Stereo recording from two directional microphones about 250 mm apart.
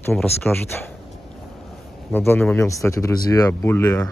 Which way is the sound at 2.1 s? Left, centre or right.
Centre.